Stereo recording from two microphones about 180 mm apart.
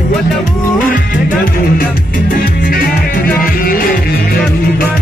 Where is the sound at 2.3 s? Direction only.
55° left (ahead or behind).